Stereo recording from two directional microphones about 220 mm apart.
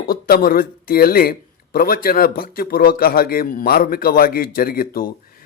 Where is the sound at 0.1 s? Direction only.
45° left (ahead or behind).